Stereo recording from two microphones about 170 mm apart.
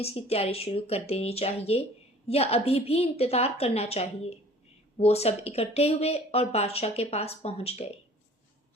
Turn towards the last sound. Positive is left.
turn(degrees=35)  # may be behind; listen again after turning